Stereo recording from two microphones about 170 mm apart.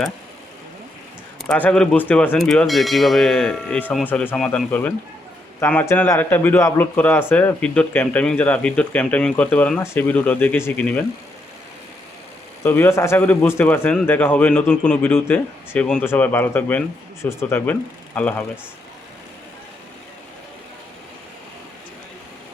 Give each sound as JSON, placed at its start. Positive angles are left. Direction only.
{"t": 1.4, "sound": "speech", "side_deg": 5}
{"t": 12.6, "sound": "speech", "side_deg": 15}